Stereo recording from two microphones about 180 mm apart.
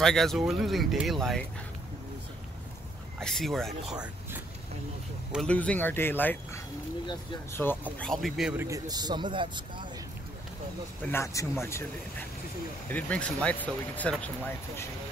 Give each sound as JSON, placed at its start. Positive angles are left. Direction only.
{"t": 0.0, "sound": "speech", "side_deg": 0}
{"t": 3.2, "sound": "a man's voice", "side_deg": 0}
{"t": 8.0, "sound": "speech", "side_deg": 0}
{"t": 8.6, "sound": "speech", "side_deg": -20}
{"t": 11.0, "sound": "a man's voice", "side_deg": 10}